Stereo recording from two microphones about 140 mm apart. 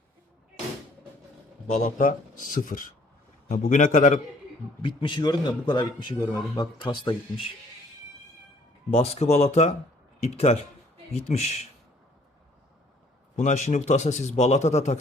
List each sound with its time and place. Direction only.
1.7 s speech: 75° left (ahead or behind)
4.8 s speech: 35° left (ahead or behind)
8.9 s speech: 45° left (ahead or behind)
13.3 s a man's voice: 60° left (ahead or behind)